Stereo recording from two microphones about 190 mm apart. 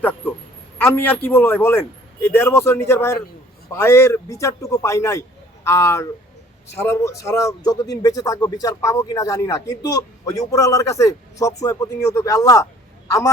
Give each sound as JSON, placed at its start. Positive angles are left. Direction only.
{"t": 0.8, "sound": "a man's voice", "side_deg": 10}